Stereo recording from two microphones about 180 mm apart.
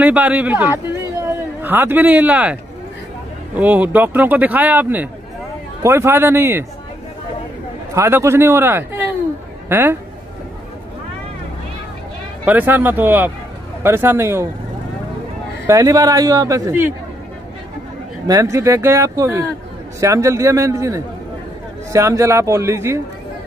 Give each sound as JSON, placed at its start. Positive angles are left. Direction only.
{"t": 0.0, "sound": "a man's voice", "side_deg": -10}
{"t": 3.5, "sound": "a man's voice", "side_deg": -10}
{"t": 7.9, "sound": "a man's voice", "side_deg": -15}
{"t": 12.4, "sound": "a man's voice", "side_deg": -10}
{"t": 15.6, "sound": "a man's voice", "side_deg": -20}
{"t": 18.2, "sound": "a man's voice", "side_deg": -20}